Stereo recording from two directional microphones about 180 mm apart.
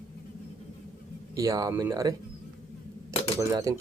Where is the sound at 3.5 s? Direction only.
20° right (ahead or behind).